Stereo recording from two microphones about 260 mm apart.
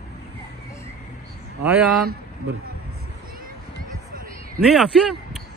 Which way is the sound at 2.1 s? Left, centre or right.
Right.